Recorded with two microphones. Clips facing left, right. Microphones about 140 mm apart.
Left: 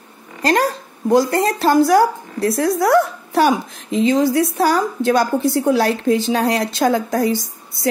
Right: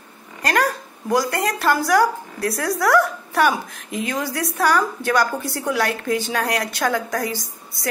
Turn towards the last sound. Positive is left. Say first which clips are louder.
# left 7 dB
turn(degrees=25)  # may be behind; listen again after turning